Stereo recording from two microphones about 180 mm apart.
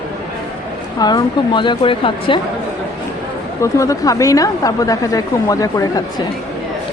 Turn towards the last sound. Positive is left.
turn(degrees=20)  # may be behind; listen again after turning